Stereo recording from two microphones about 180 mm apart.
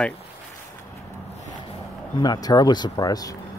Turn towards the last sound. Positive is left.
turn(degrees=20)  # may be behind; listen again after turning